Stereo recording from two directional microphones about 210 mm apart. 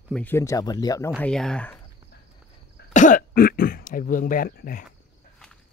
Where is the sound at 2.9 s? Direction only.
35° left (ahead or behind).